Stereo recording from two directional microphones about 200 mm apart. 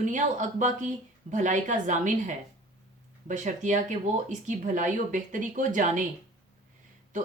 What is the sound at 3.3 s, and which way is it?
Speech, 40° right (ahead or behind).